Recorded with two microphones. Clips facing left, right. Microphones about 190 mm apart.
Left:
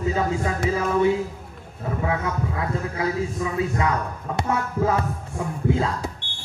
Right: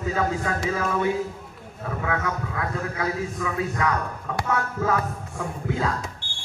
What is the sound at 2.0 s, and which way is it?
Speech, 25° left (ahead or behind).